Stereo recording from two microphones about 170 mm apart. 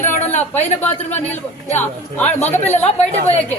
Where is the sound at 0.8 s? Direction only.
10° left (ahead or behind).